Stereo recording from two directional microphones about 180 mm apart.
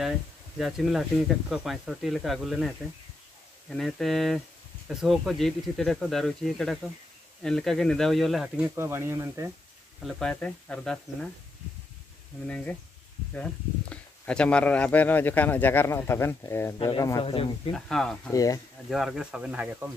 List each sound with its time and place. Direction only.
0.6 s speech: centre (ahead or behind); by 9.5 s 15° right (ahead or behind)
10.0 s speech: centre (ahead or behind)
12.4 s speech: 5° left (ahead or behind); by 17.7 s 25° left (ahead or behind)
17.7 s speech: 5° left (ahead or behind)
18.3 s speech: 20° left (ahead or behind)
18.9 s speech: centre (ahead or behind)